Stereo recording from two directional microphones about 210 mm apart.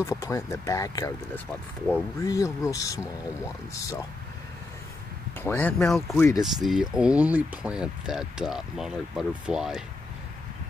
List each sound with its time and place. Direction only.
0.0 s speech: 15° left (ahead or behind)
5.4 s speech: 10° left (ahead or behind)
6.1 s speech: 10° left (ahead or behind)
6.4 s speech: centre (ahead or behind)